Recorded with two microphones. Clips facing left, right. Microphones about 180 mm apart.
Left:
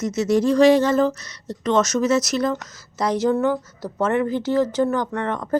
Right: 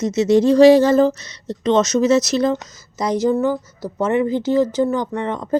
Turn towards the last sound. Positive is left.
turn(degrees=-15)  # may be behind; listen again after turning